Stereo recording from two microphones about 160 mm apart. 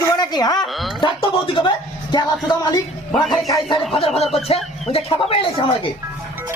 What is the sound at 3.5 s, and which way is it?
A man's voice, 30° left (ahead or behind).